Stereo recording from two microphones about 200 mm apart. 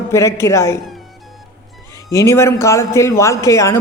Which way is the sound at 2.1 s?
15° left (ahead or behind).